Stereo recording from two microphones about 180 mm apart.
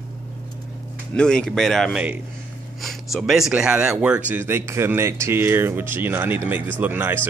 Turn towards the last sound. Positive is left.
turn(degrees=-10)  # may be behind; listen again after turning